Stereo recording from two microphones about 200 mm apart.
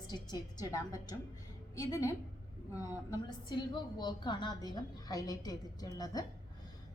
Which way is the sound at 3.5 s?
20° left (ahead or behind).